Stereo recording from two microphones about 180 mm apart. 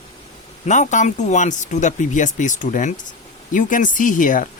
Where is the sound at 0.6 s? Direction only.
40° left (ahead or behind).